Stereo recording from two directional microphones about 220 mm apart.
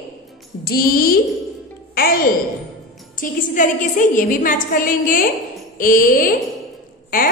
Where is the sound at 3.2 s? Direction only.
35° left (ahead or behind).